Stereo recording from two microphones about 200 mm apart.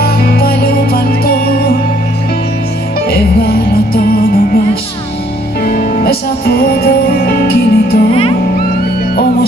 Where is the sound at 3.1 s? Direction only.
50° left (ahead or behind).